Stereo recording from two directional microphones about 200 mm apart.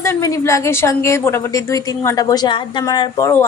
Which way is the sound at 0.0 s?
15° left (ahead or behind).